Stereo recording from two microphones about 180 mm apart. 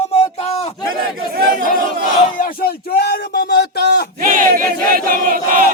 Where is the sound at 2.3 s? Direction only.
50° left (ahead or behind).